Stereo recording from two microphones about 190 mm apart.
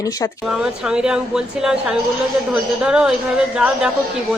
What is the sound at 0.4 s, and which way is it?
A woman's voice, 5° right (ahead or behind).